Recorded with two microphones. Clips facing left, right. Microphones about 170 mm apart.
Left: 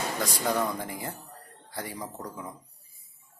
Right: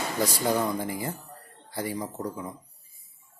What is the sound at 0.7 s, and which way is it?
Speech, 5° right (ahead or behind).